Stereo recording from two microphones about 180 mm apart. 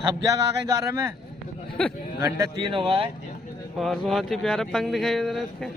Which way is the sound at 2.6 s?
30° right (ahead or behind).